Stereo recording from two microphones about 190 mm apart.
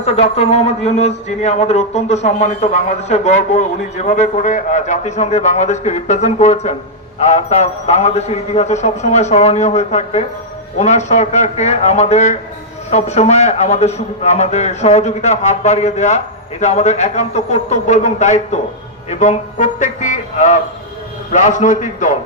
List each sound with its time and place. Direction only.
0.0 s a man's voice: 35° left (ahead or behind)